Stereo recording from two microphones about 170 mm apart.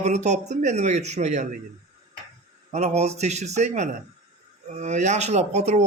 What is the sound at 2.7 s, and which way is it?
Speech, 40° right (ahead or behind).